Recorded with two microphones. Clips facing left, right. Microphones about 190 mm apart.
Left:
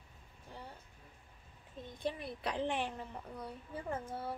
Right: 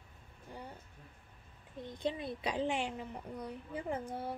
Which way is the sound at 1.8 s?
20° right (ahead or behind).